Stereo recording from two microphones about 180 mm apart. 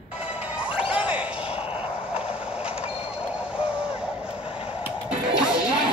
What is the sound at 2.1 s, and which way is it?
Mechanisms, 5° right (ahead or behind).